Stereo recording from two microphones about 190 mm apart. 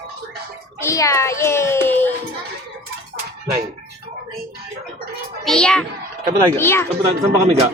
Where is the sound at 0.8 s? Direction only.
15° left (ahead or behind).